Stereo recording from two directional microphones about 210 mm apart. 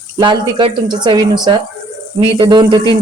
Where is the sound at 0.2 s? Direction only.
20° right (ahead or behind).